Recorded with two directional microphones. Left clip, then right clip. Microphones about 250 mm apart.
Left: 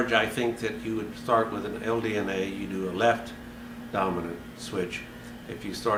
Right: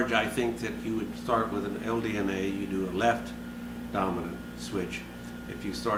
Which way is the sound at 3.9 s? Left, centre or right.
Centre.